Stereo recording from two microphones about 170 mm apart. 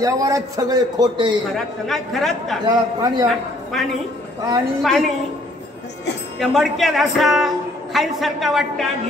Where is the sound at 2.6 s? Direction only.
25° right (ahead or behind).